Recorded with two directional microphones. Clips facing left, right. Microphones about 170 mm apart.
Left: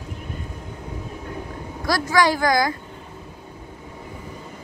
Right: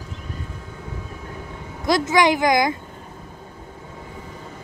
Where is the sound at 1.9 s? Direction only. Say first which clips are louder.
Right 2 dB; 20° right (ahead or behind).